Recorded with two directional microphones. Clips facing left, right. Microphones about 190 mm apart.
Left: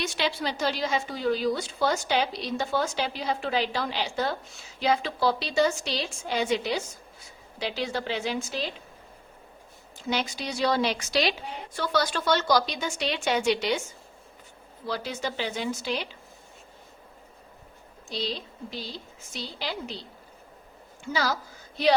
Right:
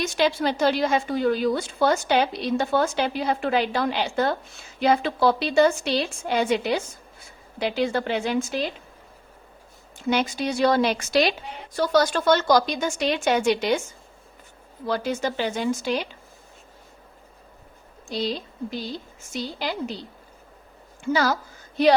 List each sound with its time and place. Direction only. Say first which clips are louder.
0.0 s a woman's voice: right 6 dB; 45° right (ahead or behind)
10.1 s a woman's voice: right 6 dB; 50° right (ahead or behind)
14.8 s a woman's voice: right 6 dB; 50° right (ahead or behind)
18.1 s a woman's voice: right 5 dB; 50° right (ahead or behind)
21.0 s a woman's voice: right 6 dB; 50° right (ahead or behind)